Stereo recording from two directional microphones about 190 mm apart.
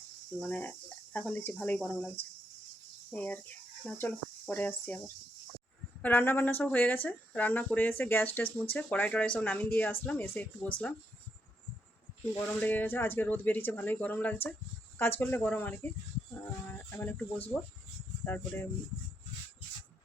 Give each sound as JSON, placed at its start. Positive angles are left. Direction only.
{"t": 0.3, "sound": "speech", "side_deg": 10}
{"t": 12.4, "sound": "speech", "side_deg": 10}